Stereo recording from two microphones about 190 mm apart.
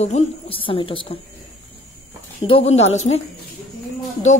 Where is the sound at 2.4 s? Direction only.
30° left (ahead or behind).